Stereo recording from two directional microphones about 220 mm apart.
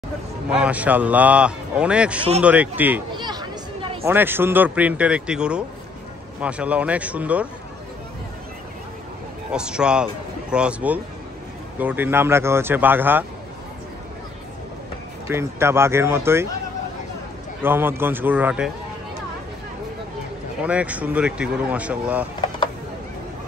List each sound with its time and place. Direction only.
0.5 s a man's voice: 5° right (ahead or behind)
3.2 s a sound: 20° right (ahead or behind)
4.0 s a man's voice: 10° right (ahead or behind)
9.5 s a man's voice: 5° right (ahead or behind)
15.2 s speech: 10° right (ahead or behind)
17.6 s speech: 10° right (ahead or behind)
20.6 s a man's voice: 5° right (ahead or behind)